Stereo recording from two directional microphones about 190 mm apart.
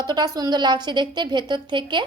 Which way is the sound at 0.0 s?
20° right (ahead or behind).